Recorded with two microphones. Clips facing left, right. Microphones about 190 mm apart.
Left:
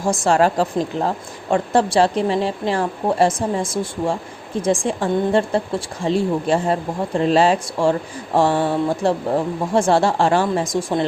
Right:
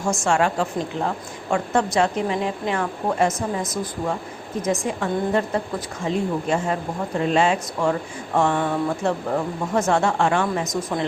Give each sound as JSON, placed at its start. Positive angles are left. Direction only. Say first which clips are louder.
{"t": 0.0, "sound": "a woman's voice", "louder": "left 4 dB", "side_deg": 35}